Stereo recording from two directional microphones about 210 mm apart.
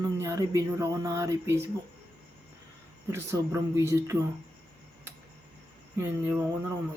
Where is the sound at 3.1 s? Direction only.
15° right (ahead or behind).